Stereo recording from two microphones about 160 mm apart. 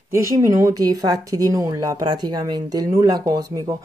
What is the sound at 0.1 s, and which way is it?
Speech, 15° right (ahead or behind).